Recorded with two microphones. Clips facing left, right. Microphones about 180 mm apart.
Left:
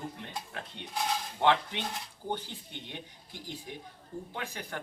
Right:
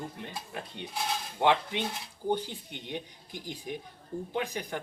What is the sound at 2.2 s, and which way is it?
Speech, 15° right (ahead or behind).